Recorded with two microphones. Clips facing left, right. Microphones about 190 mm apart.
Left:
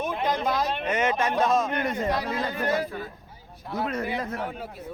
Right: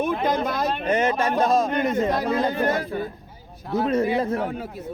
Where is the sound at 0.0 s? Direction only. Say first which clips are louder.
Right 4 dB; 50° right (ahead or behind).